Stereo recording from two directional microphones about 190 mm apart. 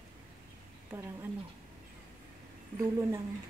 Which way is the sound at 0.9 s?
15° right (ahead or behind).